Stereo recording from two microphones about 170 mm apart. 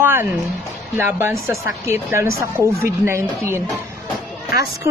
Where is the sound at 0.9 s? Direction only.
15° right (ahead or behind).